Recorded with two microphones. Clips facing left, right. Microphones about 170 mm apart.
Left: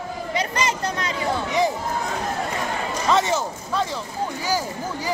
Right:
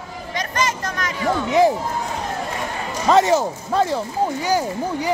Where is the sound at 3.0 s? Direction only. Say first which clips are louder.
Right 6 dB; 40° right (ahead or behind).